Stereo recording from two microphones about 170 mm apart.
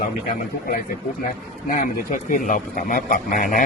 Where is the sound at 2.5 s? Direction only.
55° left (ahead or behind).